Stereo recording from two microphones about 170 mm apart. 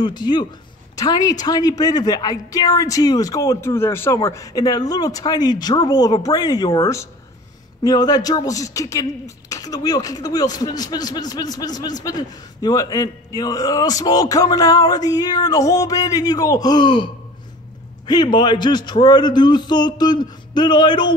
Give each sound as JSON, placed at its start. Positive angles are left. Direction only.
{"t": 0.0, "sound": "speech", "side_deg": 25}